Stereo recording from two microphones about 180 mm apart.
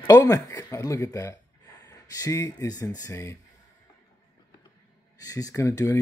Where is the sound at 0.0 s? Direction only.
20° left (ahead or behind).